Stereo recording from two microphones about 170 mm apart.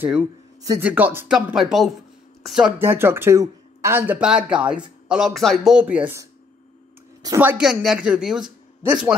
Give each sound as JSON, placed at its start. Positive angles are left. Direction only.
{"t": 0.0, "sound": "speech", "side_deg": -10}
{"t": 0.6, "sound": "speech", "side_deg": -20}
{"t": 2.8, "sound": "speech", "side_deg": -15}
{"t": 7.2, "sound": "speech", "side_deg": -10}